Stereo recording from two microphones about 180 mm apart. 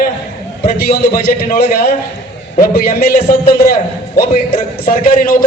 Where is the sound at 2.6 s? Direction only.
55° left (ahead or behind).